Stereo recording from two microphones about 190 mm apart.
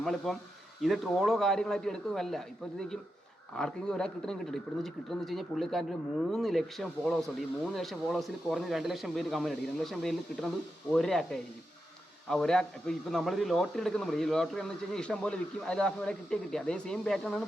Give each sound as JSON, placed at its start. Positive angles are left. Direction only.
{"t": 0.0, "sound": "speech", "side_deg": 0}
{"t": 3.5, "sound": "speech", "side_deg": 5}